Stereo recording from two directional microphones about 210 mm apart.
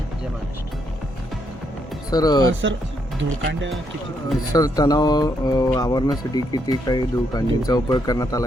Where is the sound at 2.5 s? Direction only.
65° right (ahead or behind).